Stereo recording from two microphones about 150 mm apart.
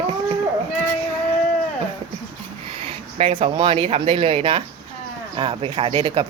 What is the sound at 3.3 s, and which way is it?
Speech, 35° right (ahead or behind).